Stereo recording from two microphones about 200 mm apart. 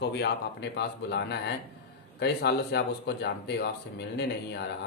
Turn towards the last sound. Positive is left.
turn(degrees=55)  # may be behind; listen again after turning